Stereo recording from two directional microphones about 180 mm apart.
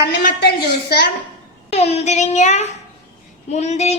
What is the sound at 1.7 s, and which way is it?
A child's voice, 35° left (ahead or behind).